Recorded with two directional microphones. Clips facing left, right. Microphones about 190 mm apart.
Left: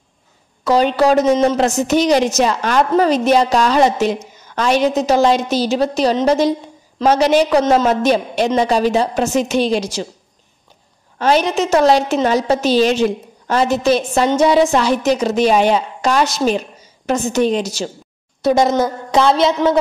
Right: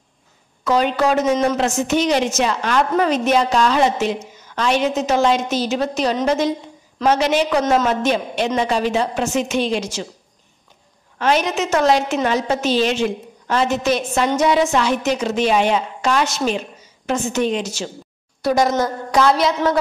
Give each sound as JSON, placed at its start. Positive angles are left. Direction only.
{"t": 0.7, "sound": "a woman's voice", "side_deg": 35}
{"t": 11.1, "sound": "a woman's voice", "side_deg": 35}
{"t": 18.4, "sound": "a woman's voice", "side_deg": 25}